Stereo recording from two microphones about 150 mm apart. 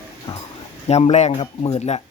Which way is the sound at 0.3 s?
25° left (ahead or behind).